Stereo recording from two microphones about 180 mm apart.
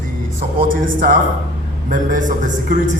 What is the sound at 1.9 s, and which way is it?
A man's voice, 45° right (ahead or behind).